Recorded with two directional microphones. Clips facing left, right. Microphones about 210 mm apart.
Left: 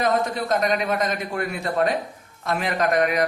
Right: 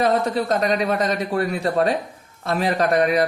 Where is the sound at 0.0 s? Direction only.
35° right (ahead or behind).